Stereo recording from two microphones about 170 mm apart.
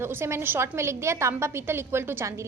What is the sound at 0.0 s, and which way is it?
A woman's voice, 15° right (ahead or behind).